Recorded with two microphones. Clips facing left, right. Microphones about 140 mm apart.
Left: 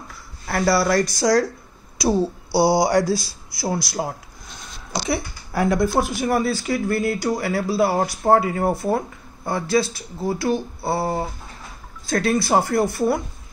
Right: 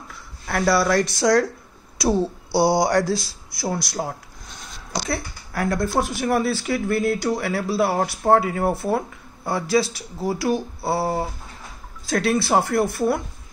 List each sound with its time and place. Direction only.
0.5 s speech: 5° left (ahead or behind)
5.1 s a woman's voice: 20° left (ahead or behind)
5.9 s speech: 5° left (ahead or behind)